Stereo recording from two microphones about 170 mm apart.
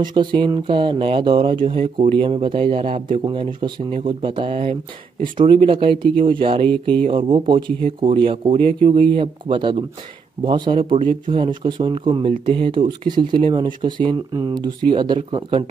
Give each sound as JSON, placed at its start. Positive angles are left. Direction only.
{"t": 0.0, "sound": "speech", "side_deg": -25}